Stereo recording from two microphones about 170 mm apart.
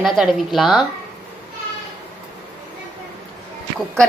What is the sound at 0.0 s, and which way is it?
Speech, centre (ahead or behind).